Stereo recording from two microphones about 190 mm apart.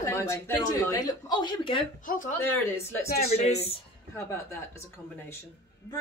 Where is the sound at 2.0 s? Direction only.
45° left (ahead or behind).